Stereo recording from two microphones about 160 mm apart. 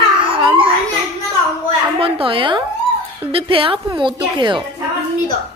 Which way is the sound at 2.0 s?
35° right (ahead or behind).